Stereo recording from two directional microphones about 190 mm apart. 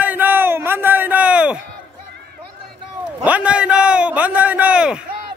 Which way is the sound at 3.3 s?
5° right (ahead or behind).